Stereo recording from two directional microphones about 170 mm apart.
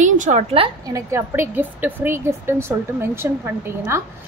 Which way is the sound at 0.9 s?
15° right (ahead or behind).